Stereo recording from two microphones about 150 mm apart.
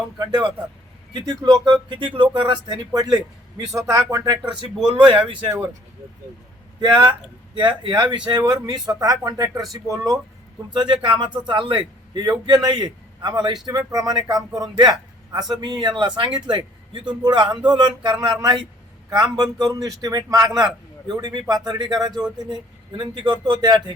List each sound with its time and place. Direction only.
0.2 s speech: 30° right (ahead or behind)
1.6 s a man's voice: 30° right (ahead or behind)
6.7 s a man's voice: 30° right (ahead or behind)